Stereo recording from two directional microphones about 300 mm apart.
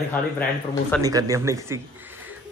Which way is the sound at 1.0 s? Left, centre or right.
Centre.